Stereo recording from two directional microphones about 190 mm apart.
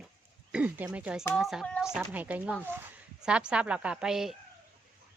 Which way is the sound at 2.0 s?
10° right (ahead or behind).